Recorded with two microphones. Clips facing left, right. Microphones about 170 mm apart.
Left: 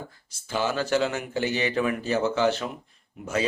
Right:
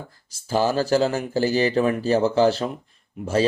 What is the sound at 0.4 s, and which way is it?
Speech, 35° right (ahead or behind).